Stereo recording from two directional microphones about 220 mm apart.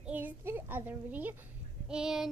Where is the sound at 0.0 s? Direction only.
5° right (ahead or behind).